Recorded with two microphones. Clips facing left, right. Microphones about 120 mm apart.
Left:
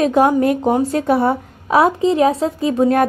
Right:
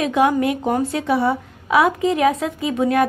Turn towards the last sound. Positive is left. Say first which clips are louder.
# left 4 dB
turn(degrees=40)  # may be behind; listen again after turning